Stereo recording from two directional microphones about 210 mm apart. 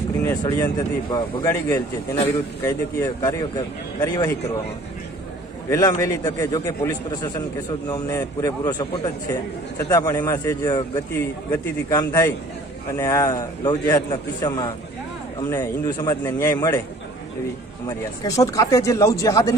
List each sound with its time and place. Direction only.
0.2 s a man's voice: 15° left (ahead or behind)
5.7 s a man's voice: 15° left (ahead or behind)
17.8 s a man's voice: 15° left (ahead or behind)